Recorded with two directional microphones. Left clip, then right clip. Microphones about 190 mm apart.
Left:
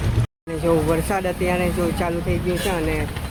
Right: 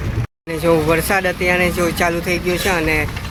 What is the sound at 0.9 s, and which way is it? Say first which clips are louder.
Speech: right 5 dB; 5° right (ahead or behind).